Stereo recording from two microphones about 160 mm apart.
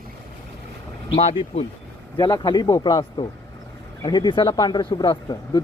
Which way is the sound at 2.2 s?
25° left (ahead or behind).